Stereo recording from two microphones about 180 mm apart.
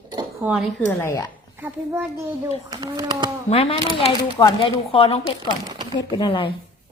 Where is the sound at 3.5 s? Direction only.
35° left (ahead or behind).